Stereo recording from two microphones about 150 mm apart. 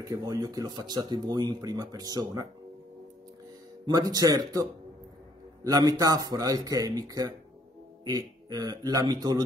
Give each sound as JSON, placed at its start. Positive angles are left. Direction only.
{"t": 0.0, "sound": "speech", "side_deg": -25}
{"t": 3.8, "sound": "speech", "side_deg": -25}